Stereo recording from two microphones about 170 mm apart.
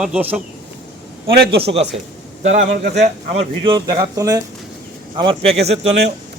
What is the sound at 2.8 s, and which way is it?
A man's voice, 40° right (ahead or behind).